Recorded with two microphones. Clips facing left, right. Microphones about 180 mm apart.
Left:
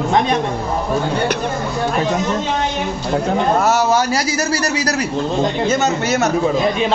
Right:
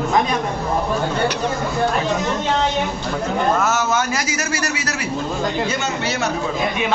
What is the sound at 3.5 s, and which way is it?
A man's voice, 35° left (ahead or behind).